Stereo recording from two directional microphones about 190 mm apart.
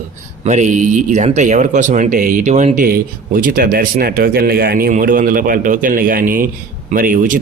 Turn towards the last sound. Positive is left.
turn(degrees=-45)  # may be behind; listen again after turning